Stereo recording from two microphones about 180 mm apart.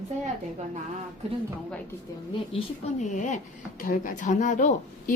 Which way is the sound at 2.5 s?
40° left (ahead or behind).